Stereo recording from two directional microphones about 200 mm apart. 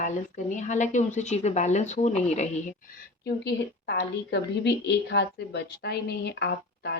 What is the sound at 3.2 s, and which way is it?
A woman's voice, 55° left (ahead or behind).